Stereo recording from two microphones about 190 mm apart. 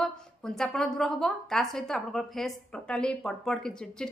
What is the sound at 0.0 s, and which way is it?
A woman's voice, centre (ahead or behind).